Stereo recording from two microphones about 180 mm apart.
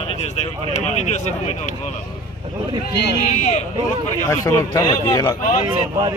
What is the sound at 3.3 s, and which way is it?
Speech, 40° left (ahead or behind).